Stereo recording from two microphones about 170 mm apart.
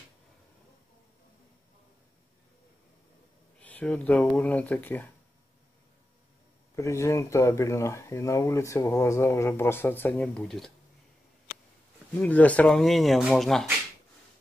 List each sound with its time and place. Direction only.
3.6 s speech: 10° left (ahead or behind)
6.7 s speech: 15° left (ahead or behind)
12.2 s speech: 10° left (ahead or behind)